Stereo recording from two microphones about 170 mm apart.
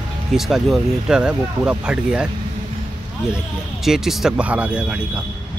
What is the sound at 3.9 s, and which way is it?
Speech, centre (ahead or behind).